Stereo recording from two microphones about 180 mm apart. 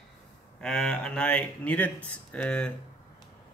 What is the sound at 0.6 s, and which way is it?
Speech, 5° left (ahead or behind).